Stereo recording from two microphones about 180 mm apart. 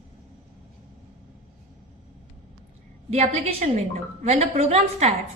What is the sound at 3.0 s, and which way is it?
A woman's voice, 35° right (ahead or behind).